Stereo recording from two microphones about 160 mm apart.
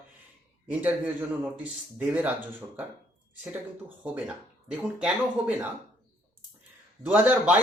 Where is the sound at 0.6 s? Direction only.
10° right (ahead or behind).